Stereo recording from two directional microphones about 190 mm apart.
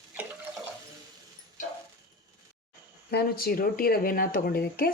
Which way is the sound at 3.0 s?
55° left (ahead or behind).